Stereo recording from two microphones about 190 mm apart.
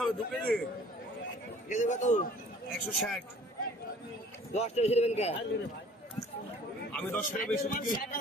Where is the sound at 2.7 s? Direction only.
Centre (ahead or behind).